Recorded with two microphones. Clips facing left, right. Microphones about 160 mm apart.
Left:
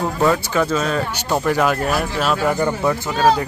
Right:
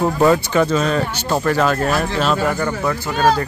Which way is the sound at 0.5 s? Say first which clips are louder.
Right 2 dB; centre (ahead or behind).